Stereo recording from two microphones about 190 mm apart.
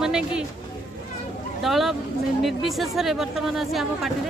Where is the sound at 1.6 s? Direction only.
Centre (ahead or behind).